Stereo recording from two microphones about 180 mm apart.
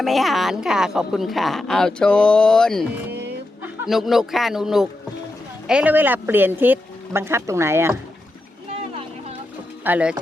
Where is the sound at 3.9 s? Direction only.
Centre (ahead or behind).